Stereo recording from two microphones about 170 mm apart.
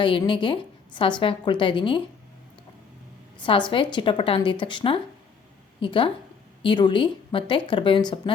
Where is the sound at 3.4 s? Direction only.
30° left (ahead or behind).